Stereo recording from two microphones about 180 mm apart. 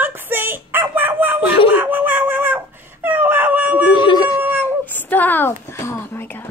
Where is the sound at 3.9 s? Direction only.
25° left (ahead or behind).